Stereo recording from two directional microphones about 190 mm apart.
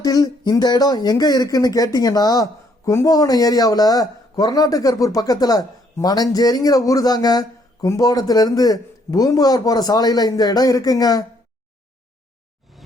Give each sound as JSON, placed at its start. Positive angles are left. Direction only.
{"t": 0.0, "sound": "speech", "side_deg": 20}